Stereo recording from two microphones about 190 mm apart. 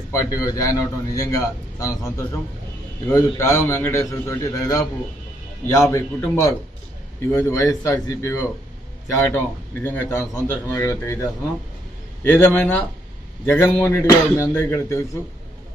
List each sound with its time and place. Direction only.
0.1 s a man's voice: 15° left (ahead or behind)
12.3 s a man's voice: 10° left (ahead or behind)